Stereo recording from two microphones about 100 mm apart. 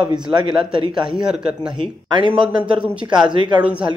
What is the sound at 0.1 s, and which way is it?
Speech, 50° right (ahead or behind).